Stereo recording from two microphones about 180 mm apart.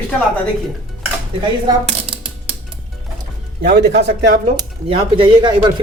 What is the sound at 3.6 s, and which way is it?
Speech, 60° right (ahead or behind).